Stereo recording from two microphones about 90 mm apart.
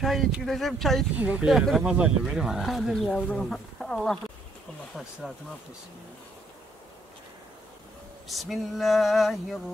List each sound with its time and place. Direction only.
0.0 s speech: centre (ahead or behind)
1.1 s speech: 15° right (ahead or behind)
8.3 s speech: centre (ahead or behind)